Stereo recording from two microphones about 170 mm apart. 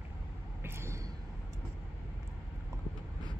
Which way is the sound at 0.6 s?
15° right (ahead or behind).